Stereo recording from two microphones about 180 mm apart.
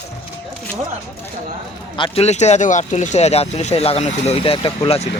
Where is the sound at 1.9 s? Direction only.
30° left (ahead or behind).